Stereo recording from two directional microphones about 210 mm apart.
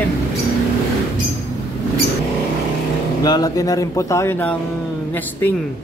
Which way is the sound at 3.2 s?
20° left (ahead or behind).